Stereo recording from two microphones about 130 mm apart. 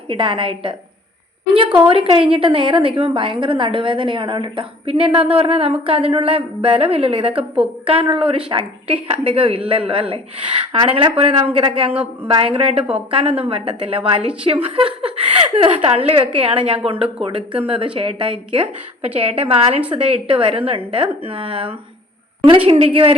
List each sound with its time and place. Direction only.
0.1 s a woman's voice: 40° right (ahead or behind)
7.3 s a woman's voice: 5° right (ahead or behind)
7.9 s a woman's voice: 45° right (ahead or behind)